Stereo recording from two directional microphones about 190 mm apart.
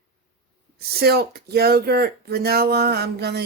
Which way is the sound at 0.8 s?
55° right (ahead or behind).